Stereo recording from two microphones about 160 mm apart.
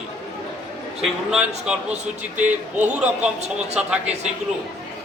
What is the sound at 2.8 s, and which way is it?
A man's voice, 5° right (ahead or behind).